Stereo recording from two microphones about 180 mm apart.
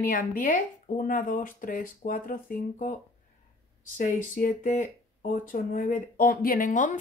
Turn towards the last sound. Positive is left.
turn(degrees=45)  # may be behind; listen again after turning